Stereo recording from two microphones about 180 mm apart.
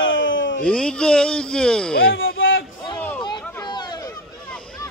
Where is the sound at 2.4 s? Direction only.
90° left.